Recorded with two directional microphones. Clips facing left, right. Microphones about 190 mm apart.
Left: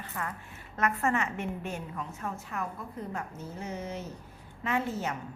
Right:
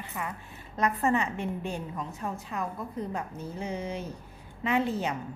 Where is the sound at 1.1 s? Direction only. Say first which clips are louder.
Right 2 dB; 30° right (ahead or behind).